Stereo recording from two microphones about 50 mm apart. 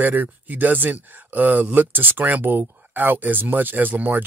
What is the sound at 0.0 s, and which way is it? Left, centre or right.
Speech, right.